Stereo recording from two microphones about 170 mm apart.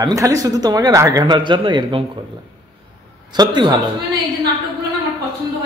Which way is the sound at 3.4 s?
25° right (ahead or behind).